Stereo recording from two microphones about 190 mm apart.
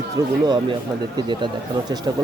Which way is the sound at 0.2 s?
20° right (ahead or behind).